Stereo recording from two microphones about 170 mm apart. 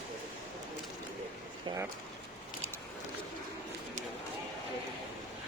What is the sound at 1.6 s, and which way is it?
Speech, 20° right (ahead or behind).